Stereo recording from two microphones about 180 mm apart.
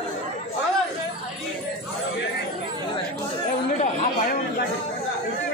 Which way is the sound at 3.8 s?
40° left (ahead or behind).